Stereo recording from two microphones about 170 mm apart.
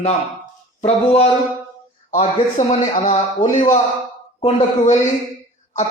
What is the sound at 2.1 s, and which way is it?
Speech, 45° left (ahead or behind).